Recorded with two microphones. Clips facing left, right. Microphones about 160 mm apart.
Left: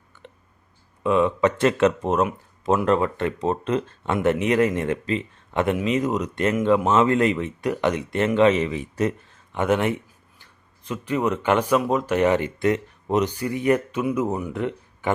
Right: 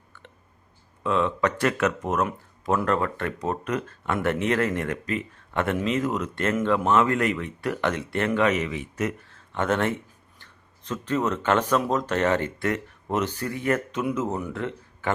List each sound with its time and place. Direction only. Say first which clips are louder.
1.0 s speech: left 4 dB; 15° left (ahead or behind); by 9.1 s 35° left (ahead or behind)
9.3 s a sound: left 3 dB; 15° left (ahead or behind)
10.3 s speech: right 1 dB; 10° left (ahead or behind)